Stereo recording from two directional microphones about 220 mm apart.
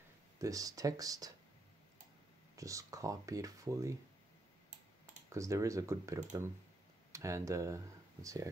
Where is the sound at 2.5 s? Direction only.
15° right (ahead or behind).